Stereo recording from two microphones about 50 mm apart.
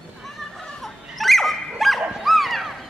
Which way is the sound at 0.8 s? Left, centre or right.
Centre.